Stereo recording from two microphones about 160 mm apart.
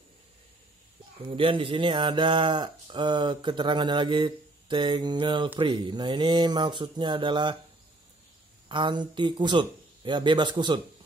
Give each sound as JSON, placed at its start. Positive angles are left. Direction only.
{"t": 1.3, "sound": "speech", "side_deg": -35}
{"t": 8.6, "sound": "speech", "side_deg": -30}